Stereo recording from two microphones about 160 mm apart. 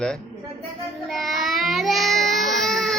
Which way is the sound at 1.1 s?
Centre (ahead or behind).